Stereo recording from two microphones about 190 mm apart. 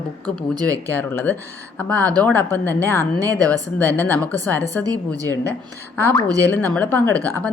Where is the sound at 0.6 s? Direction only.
10° left (ahead or behind).